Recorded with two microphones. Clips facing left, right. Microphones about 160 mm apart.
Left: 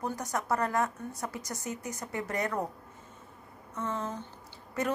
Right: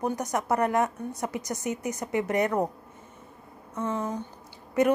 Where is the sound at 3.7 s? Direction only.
15° right (ahead or behind).